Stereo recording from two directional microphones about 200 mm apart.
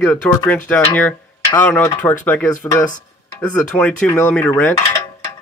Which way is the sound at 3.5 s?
10° left (ahead or behind).